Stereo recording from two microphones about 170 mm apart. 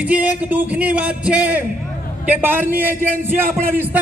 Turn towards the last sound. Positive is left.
turn(degrees=-55)  # may be behind; listen again after turning